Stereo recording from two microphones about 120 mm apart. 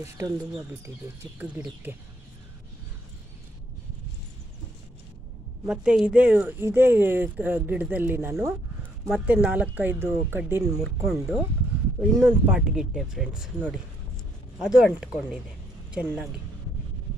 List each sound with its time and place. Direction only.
0.0 s speech: 25° right (ahead or behind)
5.7 s speech: 10° right (ahead or behind); by 10.8 s 25° right (ahead or behind)
10.8 s speech: 5° right (ahead or behind)
12.0 s speech: 15° right (ahead or behind)